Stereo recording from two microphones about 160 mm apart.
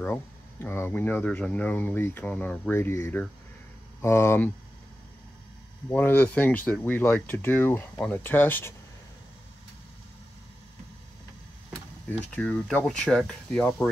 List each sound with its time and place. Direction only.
0.0 s speech: 15° left (ahead or behind)
5.9 s speech: 10° left (ahead or behind)
12.1 s speech: 5° left (ahead or behind)